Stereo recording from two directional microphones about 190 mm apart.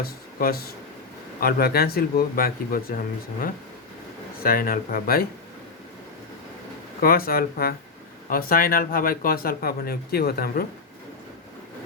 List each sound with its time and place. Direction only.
0.0 s speech: 50° left (ahead or behind)
4.4 s speech: 50° left (ahead or behind)
7.0 s speech: 50° left (ahead or behind)